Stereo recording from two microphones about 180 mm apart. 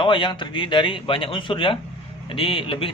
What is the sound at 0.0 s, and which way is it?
A man's voice, 25° left (ahead or behind).